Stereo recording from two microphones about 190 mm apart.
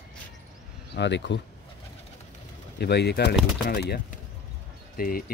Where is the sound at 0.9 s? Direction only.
65° left (ahead or behind).